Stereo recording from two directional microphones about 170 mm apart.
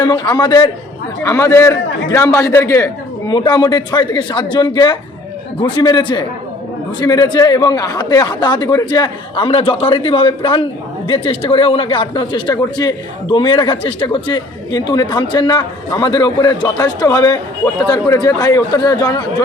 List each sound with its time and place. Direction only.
0.0 s speech: 25° left (ahead or behind)